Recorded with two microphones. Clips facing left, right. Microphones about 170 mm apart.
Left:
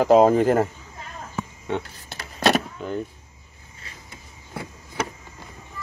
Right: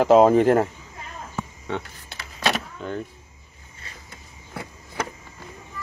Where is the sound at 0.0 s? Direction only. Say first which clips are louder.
Right 1 dB; centre (ahead or behind).